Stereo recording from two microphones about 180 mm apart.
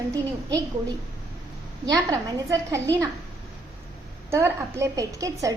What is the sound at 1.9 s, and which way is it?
A woman's voice, 20° right (ahead or behind).